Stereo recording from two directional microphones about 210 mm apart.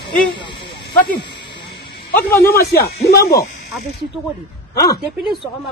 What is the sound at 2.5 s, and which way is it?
Speech, 50° left (ahead or behind).